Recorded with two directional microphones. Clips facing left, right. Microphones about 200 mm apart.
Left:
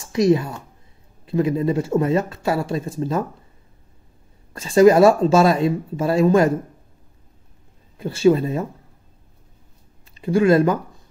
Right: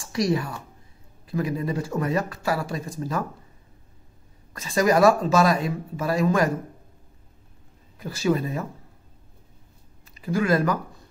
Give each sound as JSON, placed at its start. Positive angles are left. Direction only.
{"t": 0.0, "sound": "a woman's voice", "side_deg": 20}
{"t": 4.6, "sound": "speech", "side_deg": 30}
{"t": 8.0, "sound": "speech", "side_deg": 25}
{"t": 10.1, "sound": "speech", "side_deg": 25}